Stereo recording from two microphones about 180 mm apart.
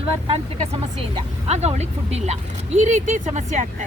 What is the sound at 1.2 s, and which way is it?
Speech, 35° right (ahead or behind).